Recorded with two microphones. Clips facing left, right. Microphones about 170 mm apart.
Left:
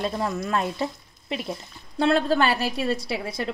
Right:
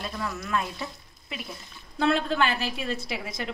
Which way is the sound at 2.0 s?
35° left (ahead or behind).